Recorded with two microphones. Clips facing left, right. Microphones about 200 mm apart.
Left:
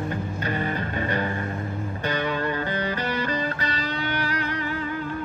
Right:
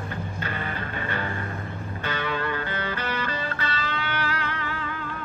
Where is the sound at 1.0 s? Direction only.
15° left (ahead or behind).